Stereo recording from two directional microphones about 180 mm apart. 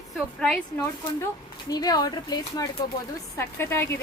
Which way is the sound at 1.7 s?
20° left (ahead or behind).